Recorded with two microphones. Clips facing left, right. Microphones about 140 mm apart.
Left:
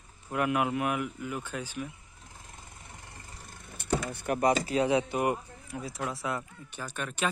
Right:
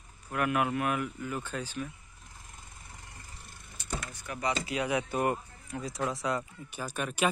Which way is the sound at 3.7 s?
60° left (ahead or behind).